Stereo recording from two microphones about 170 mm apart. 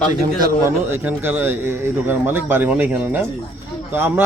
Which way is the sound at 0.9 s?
10° right (ahead or behind).